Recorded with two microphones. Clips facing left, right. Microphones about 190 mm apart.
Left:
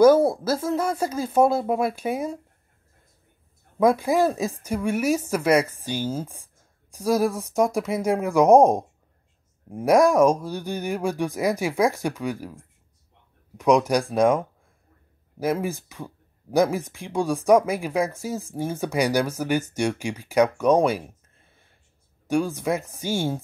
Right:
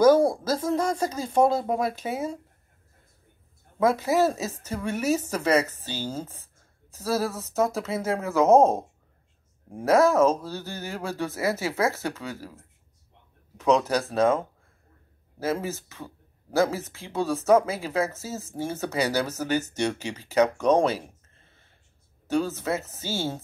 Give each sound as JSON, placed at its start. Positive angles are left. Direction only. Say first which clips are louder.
{"t": 0.0, "sound": "speech", "louder": "left 2 dB", "side_deg": 5}
{"t": 3.8, "sound": "speech", "louder": "left 2 dB", "side_deg": 15}
{"t": 22.3, "sound": "speech", "louder": "left 2 dB", "side_deg": 10}